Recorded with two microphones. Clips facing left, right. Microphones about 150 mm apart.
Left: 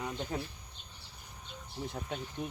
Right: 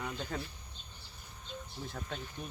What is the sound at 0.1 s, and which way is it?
Speech, 20° left (ahead or behind).